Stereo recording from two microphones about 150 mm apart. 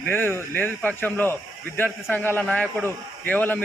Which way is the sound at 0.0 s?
15° left (ahead or behind).